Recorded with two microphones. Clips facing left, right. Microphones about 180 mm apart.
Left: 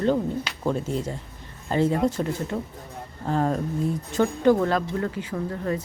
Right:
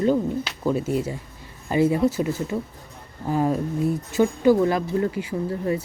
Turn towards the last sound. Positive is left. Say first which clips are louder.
# right 3 dB
turn(degrees=-10)  # may be behind; listen again after turning